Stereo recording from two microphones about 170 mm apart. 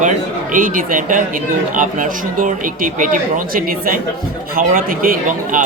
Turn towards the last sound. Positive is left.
turn(degrees=-55)  # may be behind; listen again after turning